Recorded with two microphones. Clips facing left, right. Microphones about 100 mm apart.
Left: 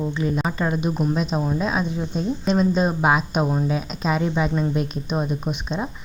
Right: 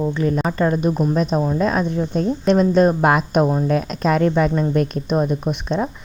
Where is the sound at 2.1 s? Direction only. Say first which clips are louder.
Right 5 dB; 60° right (ahead or behind).